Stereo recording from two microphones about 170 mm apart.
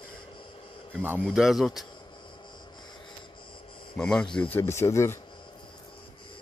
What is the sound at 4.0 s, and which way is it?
Speech, 5° left (ahead or behind).